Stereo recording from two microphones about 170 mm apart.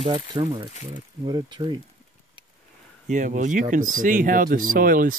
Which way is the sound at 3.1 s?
45° right (ahead or behind).